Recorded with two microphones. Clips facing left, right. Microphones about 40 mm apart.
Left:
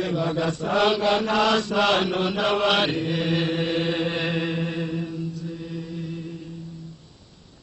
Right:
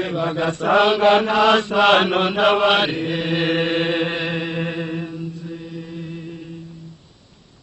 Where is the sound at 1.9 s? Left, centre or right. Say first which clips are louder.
Right 6 dB; right.